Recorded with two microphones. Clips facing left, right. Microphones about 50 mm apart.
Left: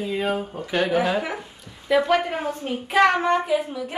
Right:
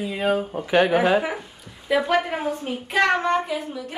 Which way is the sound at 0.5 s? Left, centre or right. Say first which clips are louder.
Right 4 dB; right.